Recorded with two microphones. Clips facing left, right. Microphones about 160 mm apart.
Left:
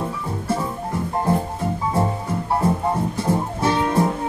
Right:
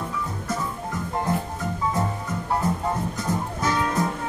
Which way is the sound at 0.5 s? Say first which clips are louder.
Left 7 dB; 30° left (ahead or behind).